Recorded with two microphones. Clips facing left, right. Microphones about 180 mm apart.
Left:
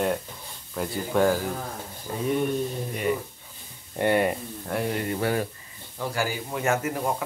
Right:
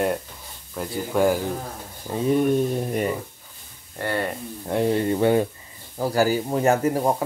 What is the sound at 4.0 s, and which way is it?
Speech, 15° left (ahead or behind).